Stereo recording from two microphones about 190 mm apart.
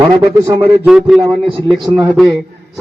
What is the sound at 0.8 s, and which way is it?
A man's voice, 5° right (ahead or behind).